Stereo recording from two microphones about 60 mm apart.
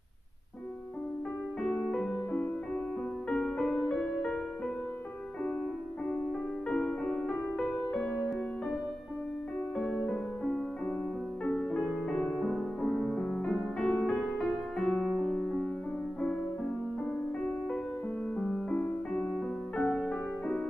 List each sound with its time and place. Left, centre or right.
1.6 s music: centre
3.3 s music: centre
6.7 s music: centre
8.2 s music: centre
10.4 s music: centre
15.3 s music: centre
18.3 s music: centre